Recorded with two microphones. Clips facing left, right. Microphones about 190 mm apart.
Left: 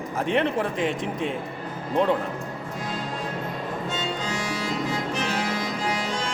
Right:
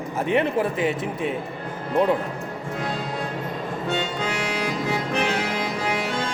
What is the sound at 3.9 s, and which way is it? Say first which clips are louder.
Music: right 6 dB; 65° right (ahead or behind).